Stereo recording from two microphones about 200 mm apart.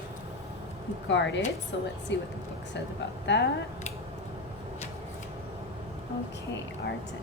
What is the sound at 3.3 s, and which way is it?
Speech, 60° left (ahead or behind).